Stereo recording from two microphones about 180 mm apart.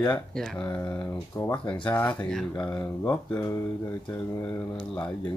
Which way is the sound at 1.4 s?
10° left (ahead or behind).